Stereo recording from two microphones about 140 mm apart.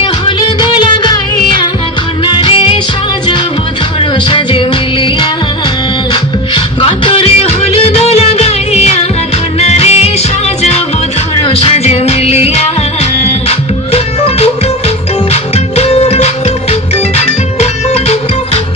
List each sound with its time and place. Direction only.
0.6 s music of bollywood: 35° left (ahead or behind)
2.2 s music: 35° left (ahead or behind)
4.0 s music: 35° left (ahead or behind)
6.5 s music: 40° left (ahead or behind)
11.4 s music: 45° left (ahead or behind)
15.5 s music: 50° left (ahead or behind)